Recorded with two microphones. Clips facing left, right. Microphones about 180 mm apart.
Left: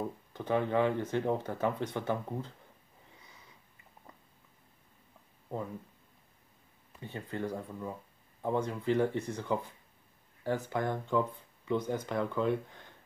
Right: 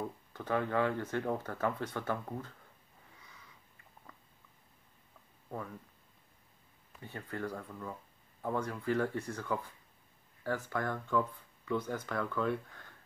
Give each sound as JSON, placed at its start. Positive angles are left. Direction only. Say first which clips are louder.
{"t": 0.3, "sound": "speech", "louder": "left 3 dB", "side_deg": 20}
{"t": 7.0, "sound": "speech", "louder": "left 3 dB", "side_deg": 20}